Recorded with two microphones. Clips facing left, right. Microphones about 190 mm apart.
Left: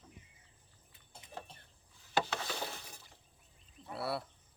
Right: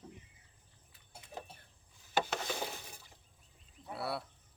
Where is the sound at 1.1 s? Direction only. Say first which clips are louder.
Right 1 dB; 10° right (ahead or behind).